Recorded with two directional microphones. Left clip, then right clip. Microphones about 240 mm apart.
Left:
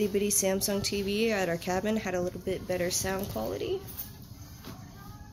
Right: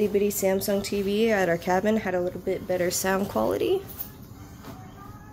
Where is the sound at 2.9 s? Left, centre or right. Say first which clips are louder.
Right 6 dB; centre.